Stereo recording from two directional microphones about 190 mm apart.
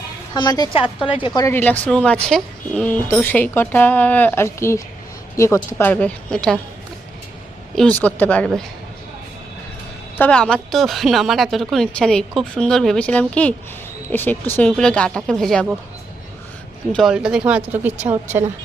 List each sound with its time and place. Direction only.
0.3 s a woman's voice: 20° left (ahead or behind); by 6.6 s 5° left (ahead or behind)
7.8 s speech: 10° left (ahead or behind)
10.2 s speech: 5° left (ahead or behind)
16.9 s speech: centre (ahead or behind)